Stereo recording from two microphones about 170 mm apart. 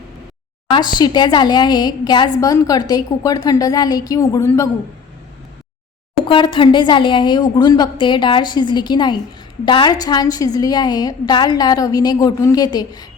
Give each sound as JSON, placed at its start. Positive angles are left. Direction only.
{"t": 0.7, "sound": "a woman's voice", "side_deg": 25}
{"t": 6.2, "sound": "a woman's voice", "side_deg": 30}